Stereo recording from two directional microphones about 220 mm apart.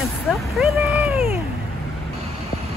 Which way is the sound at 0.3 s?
Centre (ahead or behind).